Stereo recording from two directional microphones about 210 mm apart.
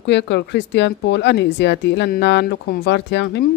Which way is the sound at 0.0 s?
55° left (ahead or behind).